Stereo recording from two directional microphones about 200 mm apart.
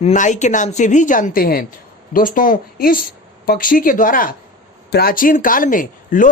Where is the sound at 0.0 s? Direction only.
35° left (ahead or behind).